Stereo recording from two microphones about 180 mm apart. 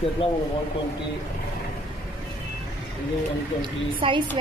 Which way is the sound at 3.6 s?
25° right (ahead or behind).